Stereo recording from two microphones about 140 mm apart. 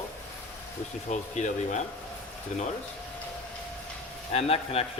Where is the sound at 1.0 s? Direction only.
60° left (ahead or behind).